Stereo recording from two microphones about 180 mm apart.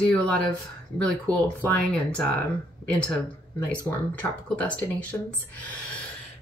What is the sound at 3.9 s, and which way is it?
Speech, 15° left (ahead or behind).